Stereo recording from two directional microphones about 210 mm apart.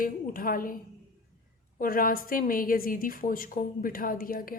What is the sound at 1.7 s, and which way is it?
A woman's voice, 45° left (ahead or behind).